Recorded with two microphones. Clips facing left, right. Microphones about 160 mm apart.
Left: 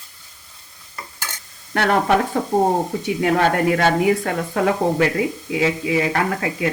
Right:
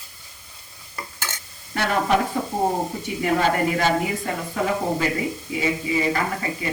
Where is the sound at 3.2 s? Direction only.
70° left (ahead or behind).